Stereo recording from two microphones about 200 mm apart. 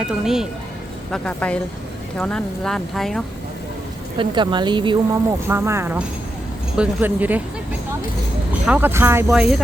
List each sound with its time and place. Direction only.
0.0 s a woman's voice: centre (ahead or behind)
4.2 s speech: 25° right (ahead or behind)
5.5 s speech: 10° right (ahead or behind)
8.6 s speech: 10° right (ahead or behind)